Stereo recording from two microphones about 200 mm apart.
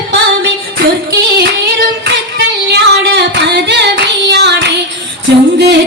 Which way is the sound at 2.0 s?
55° right (ahead or behind).